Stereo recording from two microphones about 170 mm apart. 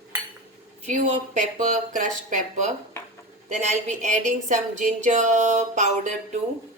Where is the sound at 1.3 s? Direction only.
45° right (ahead or behind).